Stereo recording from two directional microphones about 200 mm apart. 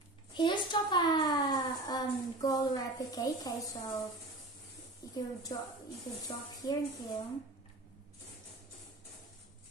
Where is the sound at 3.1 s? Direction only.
15° left (ahead or behind).